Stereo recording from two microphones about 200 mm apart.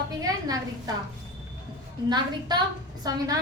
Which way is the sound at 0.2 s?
20° right (ahead or behind).